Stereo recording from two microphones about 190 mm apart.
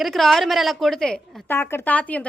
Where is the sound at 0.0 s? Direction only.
Centre (ahead or behind).